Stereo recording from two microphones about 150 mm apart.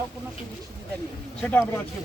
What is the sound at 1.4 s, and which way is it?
Speech, 15° left (ahead or behind).